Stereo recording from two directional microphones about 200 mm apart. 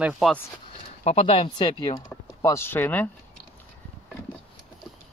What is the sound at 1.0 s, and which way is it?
Speech, 30° left (ahead or behind).